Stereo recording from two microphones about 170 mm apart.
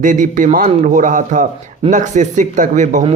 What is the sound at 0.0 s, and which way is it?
Speech, 50° right (ahead or behind).